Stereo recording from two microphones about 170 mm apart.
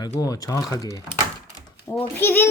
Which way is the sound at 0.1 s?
20° left (ahead or behind).